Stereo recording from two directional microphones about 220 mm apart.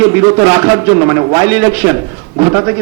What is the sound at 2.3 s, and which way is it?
Speech, 25° right (ahead or behind).